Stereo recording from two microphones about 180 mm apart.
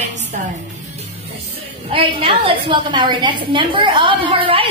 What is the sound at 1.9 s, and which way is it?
A woman's voice, 30° right (ahead or behind).